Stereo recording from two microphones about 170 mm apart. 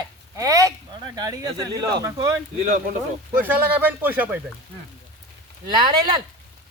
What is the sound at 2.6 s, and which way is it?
Speech, 45° right (ahead or behind).